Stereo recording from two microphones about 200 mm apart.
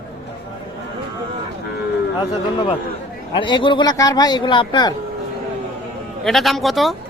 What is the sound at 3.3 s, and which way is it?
Speech, 25° left (ahead or behind).